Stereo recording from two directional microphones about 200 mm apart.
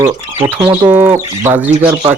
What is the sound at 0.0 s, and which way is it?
Speech, 25° right (ahead or behind).